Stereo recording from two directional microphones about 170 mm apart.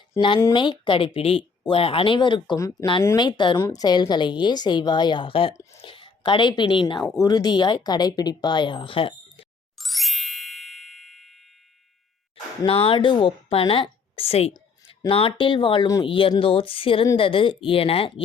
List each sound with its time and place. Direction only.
0.5 s speech: 30° left (ahead or behind)
9.7 s ding: centre (ahead or behind)
12.6 s speech: 30° left (ahead or behind)